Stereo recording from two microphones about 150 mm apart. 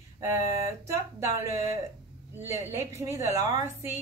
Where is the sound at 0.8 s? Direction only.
20° right (ahead or behind).